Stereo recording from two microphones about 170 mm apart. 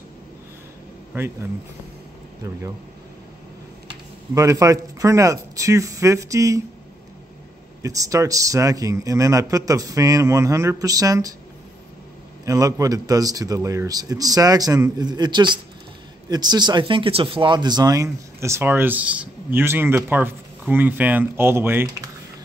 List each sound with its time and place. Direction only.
1.1 s speech: 15° right (ahead or behind)
4.3 s a man's voice: 20° right (ahead or behind)
7.8 s a man's voice: 20° right (ahead or behind)
12.4 s a man's voice: 20° right (ahead or behind)